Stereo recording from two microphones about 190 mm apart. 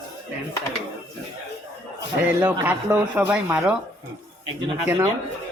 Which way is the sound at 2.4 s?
10° right (ahead or behind).